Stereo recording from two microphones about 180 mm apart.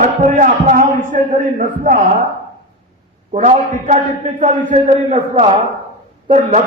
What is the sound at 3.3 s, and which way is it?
A man's voice, 40° right (ahead or behind).